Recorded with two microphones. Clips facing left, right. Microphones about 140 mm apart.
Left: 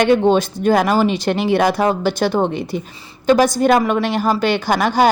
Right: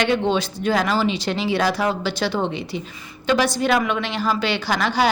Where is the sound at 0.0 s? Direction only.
45° left (ahead or behind).